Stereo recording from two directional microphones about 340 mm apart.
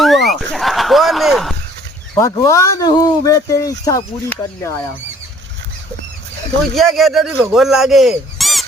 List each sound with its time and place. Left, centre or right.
0.0 s a sound: centre
2.1 s speech: centre
6.7 s speech: centre